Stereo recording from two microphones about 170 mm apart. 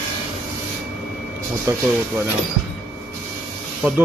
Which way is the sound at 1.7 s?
20° right (ahead or behind).